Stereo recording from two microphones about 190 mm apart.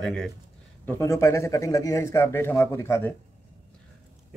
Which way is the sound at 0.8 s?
15° left (ahead or behind).